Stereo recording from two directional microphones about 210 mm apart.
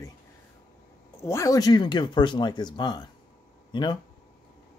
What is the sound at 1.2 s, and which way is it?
Speech, 15° left (ahead or behind).